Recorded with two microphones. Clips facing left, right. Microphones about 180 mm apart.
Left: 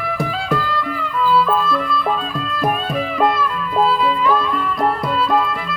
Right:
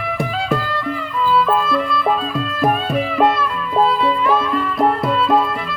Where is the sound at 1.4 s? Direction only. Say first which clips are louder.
Right 1 dB; centre (ahead or behind).